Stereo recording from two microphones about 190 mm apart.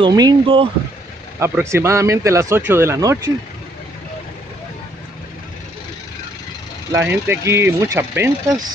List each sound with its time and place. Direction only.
0.0 s speech: 20° right (ahead or behind)
1.4 s speech: 15° right (ahead or behind)
6.9 s speech: 10° right (ahead or behind)